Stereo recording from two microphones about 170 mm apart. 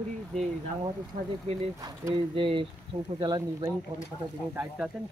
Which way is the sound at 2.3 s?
30° right (ahead or behind).